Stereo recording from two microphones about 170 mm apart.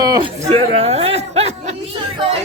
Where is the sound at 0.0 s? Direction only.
25° right (ahead or behind).